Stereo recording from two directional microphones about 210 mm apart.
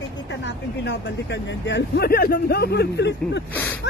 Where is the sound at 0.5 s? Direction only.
55° left (ahead or behind).